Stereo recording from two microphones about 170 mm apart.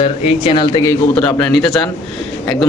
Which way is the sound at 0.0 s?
35° left (ahead or behind).